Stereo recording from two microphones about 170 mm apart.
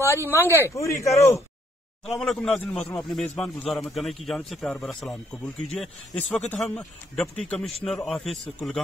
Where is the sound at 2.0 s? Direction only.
5° left (ahead or behind).